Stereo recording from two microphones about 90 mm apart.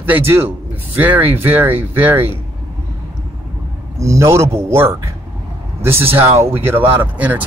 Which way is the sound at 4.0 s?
35° right (ahead or behind).